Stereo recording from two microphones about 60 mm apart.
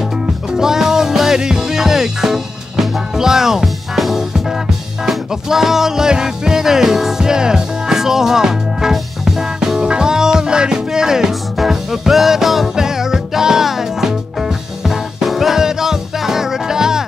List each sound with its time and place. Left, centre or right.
0.6 s music: centre